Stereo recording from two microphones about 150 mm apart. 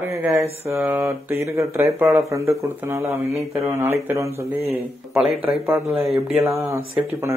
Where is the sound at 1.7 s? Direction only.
20° right (ahead or behind).